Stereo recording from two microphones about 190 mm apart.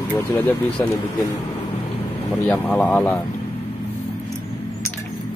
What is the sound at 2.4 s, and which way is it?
Speech, 10° left (ahead or behind).